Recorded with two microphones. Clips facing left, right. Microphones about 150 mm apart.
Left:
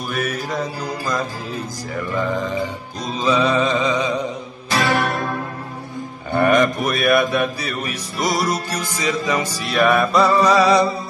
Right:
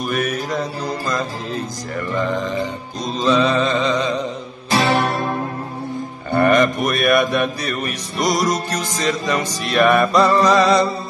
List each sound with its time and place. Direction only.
0.1 s mantra: centre (ahead or behind)
3.2 s music: 10° left (ahead or behind)
4.6 s music: 25° right (ahead or behind)
6.3 s mantra: 5° left (ahead or behind)
9.7 s music: centre (ahead or behind)